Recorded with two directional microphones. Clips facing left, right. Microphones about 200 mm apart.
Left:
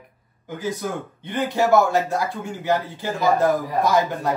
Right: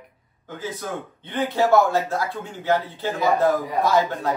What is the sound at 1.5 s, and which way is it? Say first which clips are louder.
Speech: even; 15° left (ahead or behind).